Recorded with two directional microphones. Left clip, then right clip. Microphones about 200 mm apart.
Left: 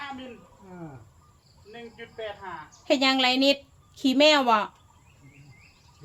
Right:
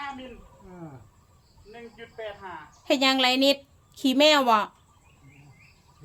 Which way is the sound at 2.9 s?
15° right (ahead or behind).